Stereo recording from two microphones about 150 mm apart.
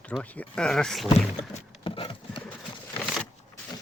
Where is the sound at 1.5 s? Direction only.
35° left (ahead or behind).